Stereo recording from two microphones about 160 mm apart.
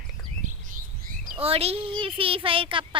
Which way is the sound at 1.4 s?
40° right (ahead or behind).